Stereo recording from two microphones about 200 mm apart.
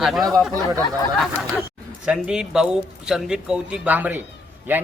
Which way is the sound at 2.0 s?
5° right (ahead or behind).